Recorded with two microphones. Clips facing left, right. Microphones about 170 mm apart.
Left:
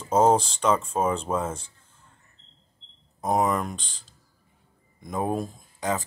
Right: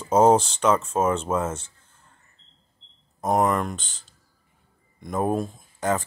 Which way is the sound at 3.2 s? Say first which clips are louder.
Right 2 dB; centre (ahead or behind).